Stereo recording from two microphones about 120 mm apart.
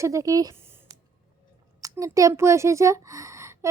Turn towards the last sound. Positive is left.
turn(degrees=-25)  # may be behind; listen again after turning